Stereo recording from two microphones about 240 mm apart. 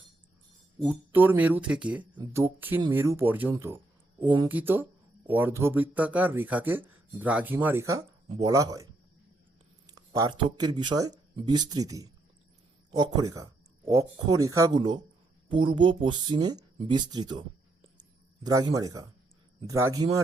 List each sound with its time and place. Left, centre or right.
0.8 s speech: centre
18.4 s speech: centre